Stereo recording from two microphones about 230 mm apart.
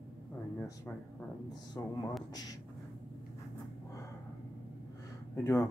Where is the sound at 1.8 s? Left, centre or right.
Centre.